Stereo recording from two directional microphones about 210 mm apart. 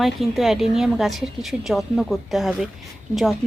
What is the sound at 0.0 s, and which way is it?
A woman's voice, centre (ahead or behind).